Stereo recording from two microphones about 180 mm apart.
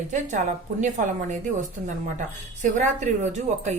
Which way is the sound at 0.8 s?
45° right (ahead or behind).